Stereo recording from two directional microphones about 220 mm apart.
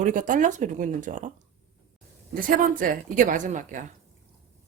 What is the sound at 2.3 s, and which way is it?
Speech, 40° right (ahead or behind).